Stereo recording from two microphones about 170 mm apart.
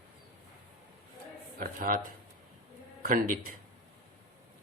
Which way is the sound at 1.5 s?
55° right (ahead or behind).